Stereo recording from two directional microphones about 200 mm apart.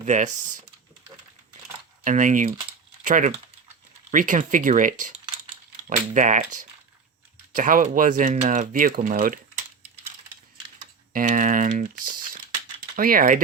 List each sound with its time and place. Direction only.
0.0 s speech: 40° right (ahead or behind)
2.0 s speech: 40° right (ahead or behind)
6.1 s speech: 40° right (ahead or behind)
11.1 s speech: 40° right (ahead or behind)